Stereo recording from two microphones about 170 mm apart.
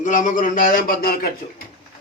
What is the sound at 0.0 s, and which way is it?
Speech, 50° left (ahead or behind).